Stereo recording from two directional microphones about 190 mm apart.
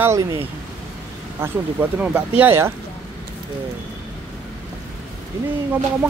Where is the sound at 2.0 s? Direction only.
10° right (ahead or behind).